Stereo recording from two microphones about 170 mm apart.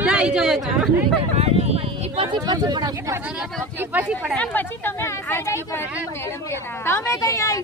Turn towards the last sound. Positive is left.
turn(degrees=20)  # may be behind; listen again after turning